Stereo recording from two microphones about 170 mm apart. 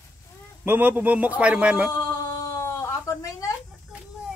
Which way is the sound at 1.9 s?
20° left (ahead or behind).